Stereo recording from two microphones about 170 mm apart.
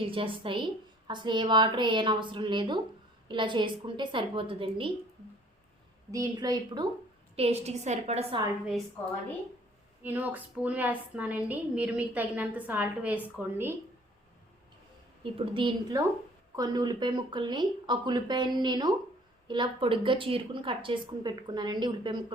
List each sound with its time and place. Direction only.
0.0 s a woman's voice: 30° right (ahead or behind)
6.1 s a woman's voice: 20° right (ahead or behind)
7.3 s a woman's voice: 40° right (ahead or behind)
10.0 s a woman's voice: 10° right (ahead or behind)
15.2 s a woman's voice: 30° right (ahead or behind)